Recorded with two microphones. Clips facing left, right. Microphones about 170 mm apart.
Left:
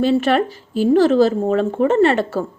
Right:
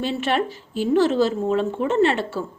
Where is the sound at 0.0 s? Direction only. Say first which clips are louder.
Left 7 dB; 40° left (ahead or behind).